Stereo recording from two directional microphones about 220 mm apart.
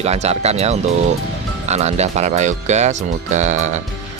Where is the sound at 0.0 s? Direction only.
30° right (ahead or behind).